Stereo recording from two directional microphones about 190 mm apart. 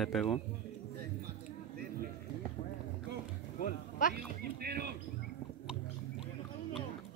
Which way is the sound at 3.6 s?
45° left (ahead or behind).